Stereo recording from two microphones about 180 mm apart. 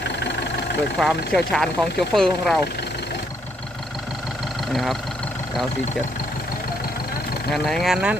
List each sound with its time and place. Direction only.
0.9 s speech: centre (ahead or behind)
4.7 s speech: centre (ahead or behind)
7.5 s speech: centre (ahead or behind)